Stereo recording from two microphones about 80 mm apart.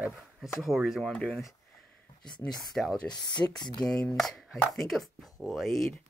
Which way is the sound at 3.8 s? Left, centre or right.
Centre.